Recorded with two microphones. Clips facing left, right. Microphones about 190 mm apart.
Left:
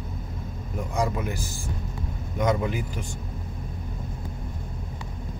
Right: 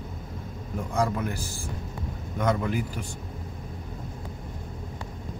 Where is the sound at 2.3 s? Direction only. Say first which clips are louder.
Left 1 dB; 10° left (ahead or behind).